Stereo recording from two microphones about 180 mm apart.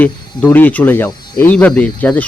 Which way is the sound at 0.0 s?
10° left (ahead or behind).